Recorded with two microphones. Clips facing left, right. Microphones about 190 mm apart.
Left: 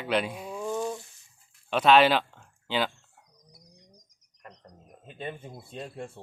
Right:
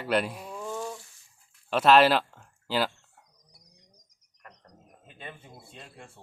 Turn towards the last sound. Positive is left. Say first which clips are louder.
# left 10 dB
turn(degrees=40)  # may be behind; listen again after turning